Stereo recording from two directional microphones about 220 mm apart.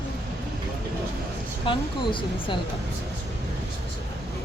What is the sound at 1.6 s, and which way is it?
Speech, 20° left (ahead or behind).